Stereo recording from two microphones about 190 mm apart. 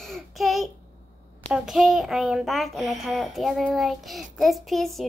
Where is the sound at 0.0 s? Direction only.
Centre (ahead or behind).